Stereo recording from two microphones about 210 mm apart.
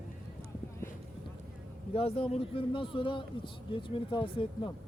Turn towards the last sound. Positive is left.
turn(degrees=25)  # may be behind; listen again after turning